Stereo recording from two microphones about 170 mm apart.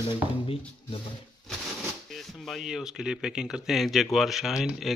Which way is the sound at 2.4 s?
Centre (ahead or behind).